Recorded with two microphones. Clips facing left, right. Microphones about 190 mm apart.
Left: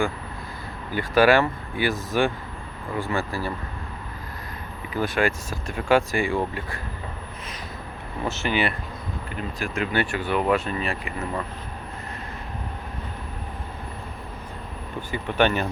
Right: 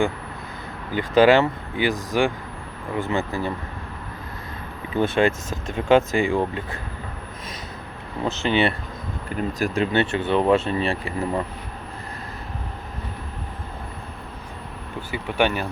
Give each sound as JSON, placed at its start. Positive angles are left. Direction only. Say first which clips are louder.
{"t": 0.9, "sound": "speech", "louder": "right 3 dB", "side_deg": -20}
{"t": 4.9, "sound": "speech", "louder": "right 4 dB", "side_deg": -25}
{"t": 8.2, "sound": "speech", "louder": "right 4 dB", "side_deg": -20}
{"t": 9.6, "sound": "speech", "louder": "right 4 dB", "side_deg": -35}
{"t": 15.1, "sound": "speech", "louder": "even", "side_deg": -10}